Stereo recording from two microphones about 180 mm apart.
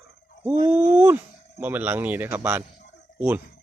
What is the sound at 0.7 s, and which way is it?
Speech, 40° right (ahead or behind).